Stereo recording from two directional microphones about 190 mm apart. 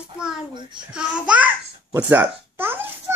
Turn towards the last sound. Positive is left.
turn(degrees=-10)  # may be behind; listen again after turning